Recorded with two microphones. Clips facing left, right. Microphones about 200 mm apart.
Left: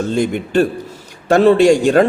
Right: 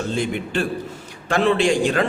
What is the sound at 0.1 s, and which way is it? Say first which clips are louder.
A man's voice: left 7 dB; 40° left (ahead or behind).